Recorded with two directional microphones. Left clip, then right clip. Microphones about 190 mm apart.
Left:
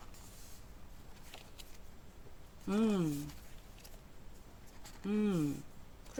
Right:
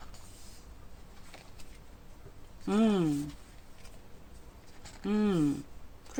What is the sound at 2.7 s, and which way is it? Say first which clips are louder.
Speech: right 6 dB; 20° right (ahead or behind).